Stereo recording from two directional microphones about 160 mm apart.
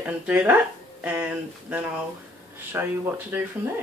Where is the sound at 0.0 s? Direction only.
10° right (ahead or behind).